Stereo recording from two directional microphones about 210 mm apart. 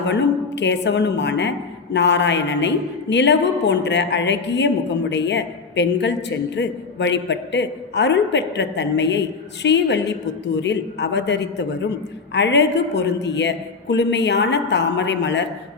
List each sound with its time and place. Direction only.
0.0 s a woman's voice: 55° left (ahead or behind)